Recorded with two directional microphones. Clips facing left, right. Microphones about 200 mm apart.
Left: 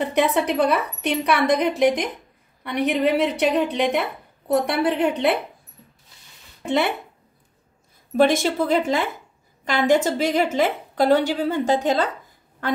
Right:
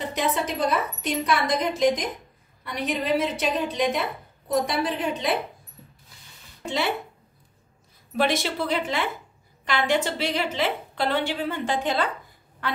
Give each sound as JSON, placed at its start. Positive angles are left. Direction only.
{"t": 0.0, "sound": "a woman's voice", "side_deg": 60}
{"t": 6.6, "sound": "speech", "side_deg": 55}
{"t": 8.2, "sound": "a woman's voice", "side_deg": 45}